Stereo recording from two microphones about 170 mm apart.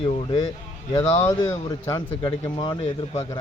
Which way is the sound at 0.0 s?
35° left (ahead or behind).